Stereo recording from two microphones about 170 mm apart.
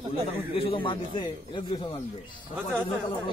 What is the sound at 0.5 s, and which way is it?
Speech, 30° left (ahead or behind).